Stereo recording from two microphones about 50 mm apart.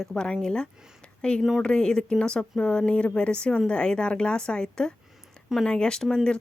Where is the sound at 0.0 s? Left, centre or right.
Centre.